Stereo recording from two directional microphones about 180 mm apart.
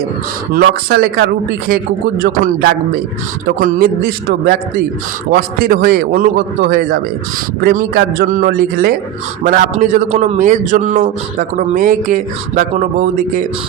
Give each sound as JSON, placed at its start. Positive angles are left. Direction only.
{"t": 0.5, "sound": "a man's voice", "side_deg": -60}